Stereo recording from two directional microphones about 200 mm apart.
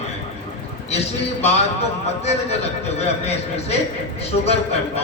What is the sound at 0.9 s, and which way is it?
A man's voice, 30° left (ahead or behind).